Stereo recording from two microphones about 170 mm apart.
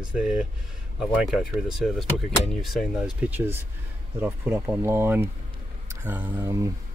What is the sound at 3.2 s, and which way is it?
Speech, 10° right (ahead or behind).